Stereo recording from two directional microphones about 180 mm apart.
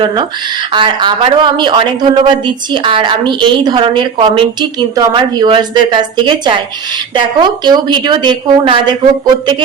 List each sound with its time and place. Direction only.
0.0 s a woman's voice: 25° right (ahead or behind)